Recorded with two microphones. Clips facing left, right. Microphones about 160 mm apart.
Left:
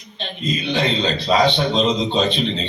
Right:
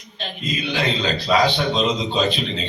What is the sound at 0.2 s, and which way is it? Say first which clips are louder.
A man's voice: left 2 dB; 25° left (ahead or behind).